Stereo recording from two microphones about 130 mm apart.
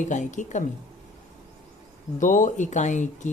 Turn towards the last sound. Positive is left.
turn(degrees=70)  # may be behind; listen again after turning